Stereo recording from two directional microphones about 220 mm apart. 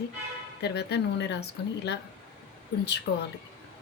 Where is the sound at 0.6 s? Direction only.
50° left (ahead or behind).